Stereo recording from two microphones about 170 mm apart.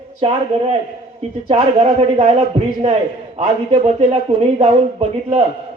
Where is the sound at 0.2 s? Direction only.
35° right (ahead or behind).